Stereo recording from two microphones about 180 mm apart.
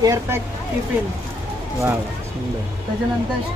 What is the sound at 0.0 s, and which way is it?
Speech, 15° right (ahead or behind).